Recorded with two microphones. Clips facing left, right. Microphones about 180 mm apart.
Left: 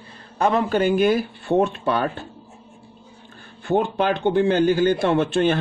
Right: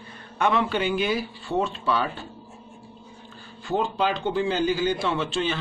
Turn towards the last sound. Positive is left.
turn(degrees=55)  # may be behind; listen again after turning